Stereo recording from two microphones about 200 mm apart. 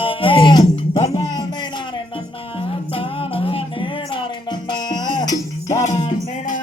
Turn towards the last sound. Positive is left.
turn(degrees=40)  # may be behind; listen again after turning